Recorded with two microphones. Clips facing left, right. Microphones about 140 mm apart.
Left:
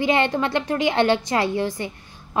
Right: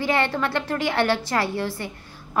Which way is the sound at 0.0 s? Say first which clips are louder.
Left 3 dB; 20° left (ahead or behind).